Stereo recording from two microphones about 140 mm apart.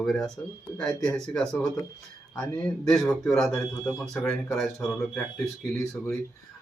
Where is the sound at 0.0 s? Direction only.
Centre (ahead or behind).